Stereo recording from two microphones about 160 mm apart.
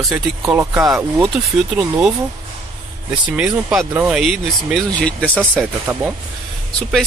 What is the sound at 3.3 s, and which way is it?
Speech, 5° right (ahead or behind).